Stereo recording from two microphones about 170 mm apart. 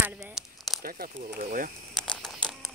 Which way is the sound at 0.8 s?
60° right (ahead or behind).